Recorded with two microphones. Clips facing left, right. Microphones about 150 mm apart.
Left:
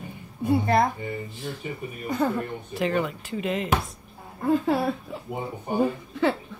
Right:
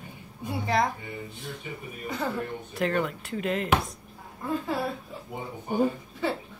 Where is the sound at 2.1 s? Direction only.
50° left (ahead or behind).